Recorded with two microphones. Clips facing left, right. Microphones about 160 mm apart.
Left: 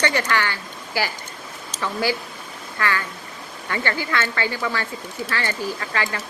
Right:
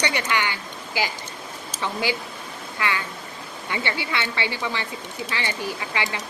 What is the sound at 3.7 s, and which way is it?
Speech, 15° right (ahead or behind).